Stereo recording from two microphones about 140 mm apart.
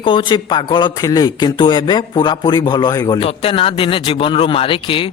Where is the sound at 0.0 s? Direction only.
35° left (ahead or behind).